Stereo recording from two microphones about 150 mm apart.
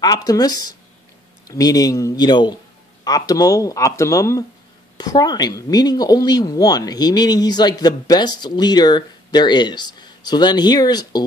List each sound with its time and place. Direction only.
0.0 s speech: 25° left (ahead or behind)